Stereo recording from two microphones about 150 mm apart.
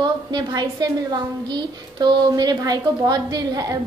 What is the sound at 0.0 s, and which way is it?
A woman's voice, 30° right (ahead or behind).